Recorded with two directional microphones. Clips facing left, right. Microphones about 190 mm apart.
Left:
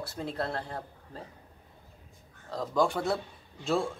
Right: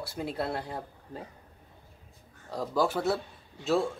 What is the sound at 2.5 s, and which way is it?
Speech, 5° right (ahead or behind).